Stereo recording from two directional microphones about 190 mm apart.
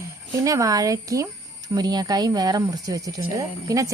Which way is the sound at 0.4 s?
15° right (ahead or behind).